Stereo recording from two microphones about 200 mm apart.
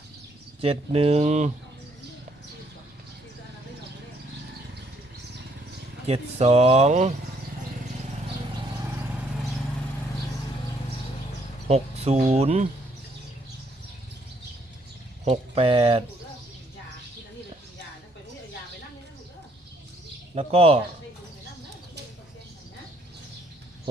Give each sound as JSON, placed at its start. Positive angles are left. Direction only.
{"t": 0.6, "sound": "speech", "side_deg": -30}
{"t": 6.1, "sound": "speech", "side_deg": -30}
{"t": 11.7, "sound": "speech", "side_deg": -30}
{"t": 15.2, "sound": "speech", "side_deg": -30}
{"t": 20.3, "sound": "speech", "side_deg": -30}